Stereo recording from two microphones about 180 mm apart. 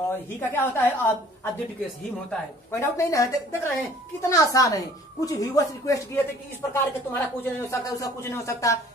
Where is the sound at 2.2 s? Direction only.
15° left (ahead or behind).